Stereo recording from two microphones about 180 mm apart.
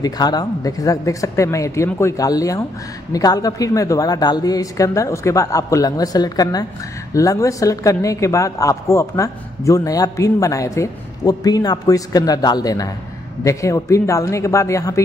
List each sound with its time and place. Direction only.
0.0 s a man's voice: 20° left (ahead or behind)